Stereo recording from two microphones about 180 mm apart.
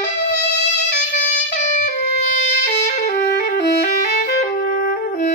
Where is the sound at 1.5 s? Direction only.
40° left (ahead or behind).